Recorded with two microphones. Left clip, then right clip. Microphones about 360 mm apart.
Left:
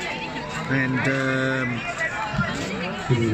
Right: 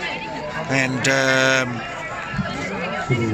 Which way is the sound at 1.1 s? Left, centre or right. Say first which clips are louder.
Right 7 dB; right.